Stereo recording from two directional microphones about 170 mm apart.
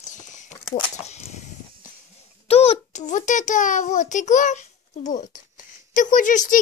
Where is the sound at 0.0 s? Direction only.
45° left (ahead or behind).